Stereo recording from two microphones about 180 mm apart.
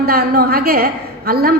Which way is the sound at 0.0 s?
60° right (ahead or behind).